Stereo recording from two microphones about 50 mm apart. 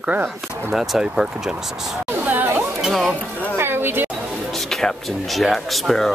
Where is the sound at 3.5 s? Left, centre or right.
Right.